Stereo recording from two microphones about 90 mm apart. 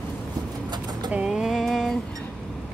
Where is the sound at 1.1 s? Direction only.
10° right (ahead or behind).